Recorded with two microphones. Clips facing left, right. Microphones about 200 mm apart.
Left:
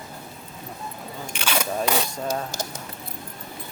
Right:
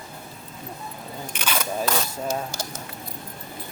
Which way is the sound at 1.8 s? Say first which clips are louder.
Left 1 dB; 15° left (ahead or behind).